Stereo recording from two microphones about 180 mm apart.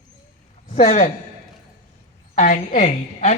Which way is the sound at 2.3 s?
45° left (ahead or behind).